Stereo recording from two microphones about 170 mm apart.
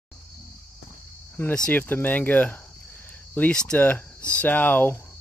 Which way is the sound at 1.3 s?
10° left (ahead or behind).